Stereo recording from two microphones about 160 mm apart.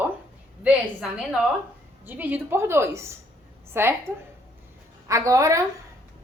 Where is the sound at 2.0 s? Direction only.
10° right (ahead or behind).